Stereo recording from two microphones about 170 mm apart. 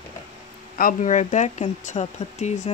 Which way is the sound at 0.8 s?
50° left (ahead or behind).